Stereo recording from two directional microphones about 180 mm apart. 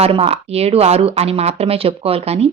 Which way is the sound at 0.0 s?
35° right (ahead or behind).